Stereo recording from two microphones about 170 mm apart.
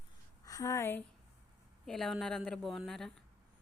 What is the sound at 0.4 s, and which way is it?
Speech, 20° left (ahead or behind).